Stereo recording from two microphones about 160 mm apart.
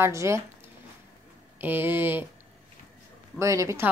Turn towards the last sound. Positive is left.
turn(degrees=-15)  # may be behind; listen again after turning